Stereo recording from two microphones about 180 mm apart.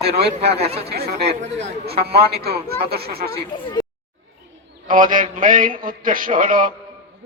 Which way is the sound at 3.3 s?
20° left (ahead or behind).